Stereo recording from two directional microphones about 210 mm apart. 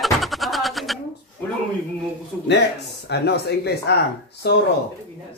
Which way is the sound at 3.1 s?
50° left (ahead or behind).